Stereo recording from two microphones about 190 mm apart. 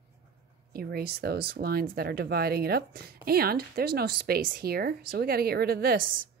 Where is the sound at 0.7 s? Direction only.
55° right (ahead or behind).